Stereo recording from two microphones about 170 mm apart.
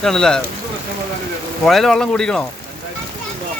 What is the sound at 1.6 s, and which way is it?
Speech, centre (ahead or behind).